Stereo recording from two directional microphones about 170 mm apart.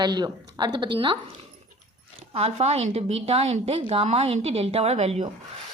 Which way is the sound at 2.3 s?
40° right (ahead or behind).